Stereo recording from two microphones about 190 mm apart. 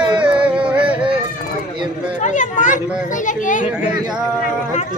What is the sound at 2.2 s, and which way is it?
A child's voice, 40° left (ahead or behind).